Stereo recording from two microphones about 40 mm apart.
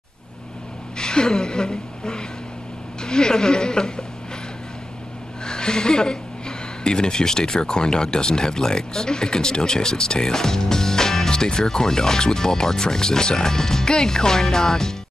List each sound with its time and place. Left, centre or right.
0.9 s a woman's voice: centre
5.4 s speech: centre